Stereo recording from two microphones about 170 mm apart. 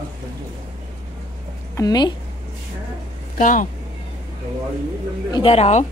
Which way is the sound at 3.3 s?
50° left (ahead or behind).